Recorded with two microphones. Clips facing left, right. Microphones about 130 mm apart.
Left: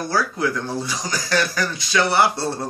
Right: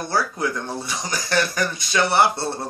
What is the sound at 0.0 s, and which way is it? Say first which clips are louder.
Speech: left 1 dB; 25° right (ahead or behind).